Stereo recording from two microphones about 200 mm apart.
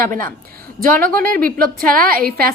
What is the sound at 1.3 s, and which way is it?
A woman's voice, 45° right (ahead or behind).